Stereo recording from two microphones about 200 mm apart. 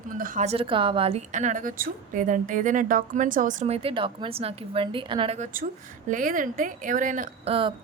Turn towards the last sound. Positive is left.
turn(degrees=-25)  # may be behind; listen again after turning